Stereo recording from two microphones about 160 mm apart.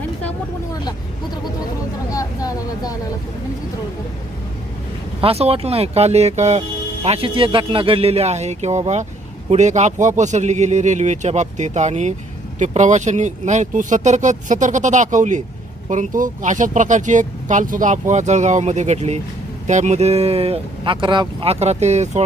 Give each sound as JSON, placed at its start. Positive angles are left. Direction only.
{"t": 2.1, "sound": "speech", "side_deg": 20}
{"t": 5.2, "sound": "speech", "side_deg": -40}